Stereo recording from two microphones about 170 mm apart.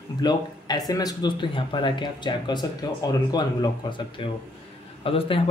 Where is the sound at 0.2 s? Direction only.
25° left (ahead or behind).